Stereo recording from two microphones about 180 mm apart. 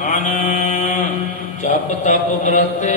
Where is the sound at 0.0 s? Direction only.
40° left (ahead or behind).